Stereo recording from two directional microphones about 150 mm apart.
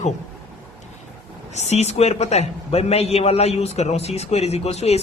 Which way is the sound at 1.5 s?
45° left (ahead or behind).